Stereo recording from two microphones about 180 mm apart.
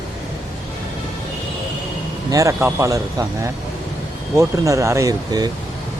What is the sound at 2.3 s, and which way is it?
Speech, 15° right (ahead or behind).